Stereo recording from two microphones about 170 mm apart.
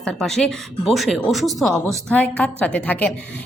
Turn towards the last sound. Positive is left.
turn(degrees=10)  # may be behind; listen again after turning